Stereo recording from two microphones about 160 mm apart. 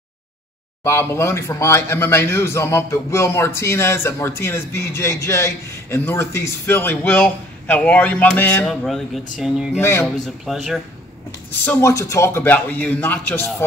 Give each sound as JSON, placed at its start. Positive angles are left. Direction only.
{"t": 0.8, "sound": "speech", "side_deg": 15}
{"t": 9.8, "sound": "speech", "side_deg": 15}
{"t": 10.2, "sound": "speech", "side_deg": 0}
{"t": 11.6, "sound": "speech", "side_deg": 15}